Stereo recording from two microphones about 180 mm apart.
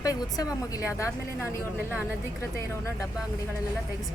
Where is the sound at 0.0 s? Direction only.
20° left (ahead or behind).